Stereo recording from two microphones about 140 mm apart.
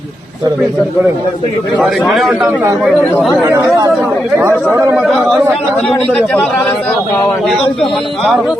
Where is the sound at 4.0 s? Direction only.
15° right (ahead or behind).